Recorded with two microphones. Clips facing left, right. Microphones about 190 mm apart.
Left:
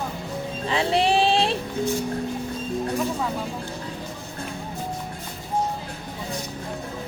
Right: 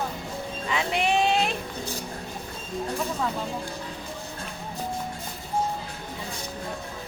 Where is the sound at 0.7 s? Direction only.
30° left (ahead or behind).